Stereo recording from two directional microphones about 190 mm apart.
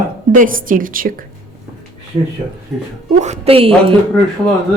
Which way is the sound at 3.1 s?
35° right (ahead or behind).